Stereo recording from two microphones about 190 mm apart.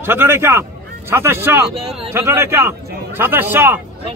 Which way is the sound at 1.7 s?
30° right (ahead or behind).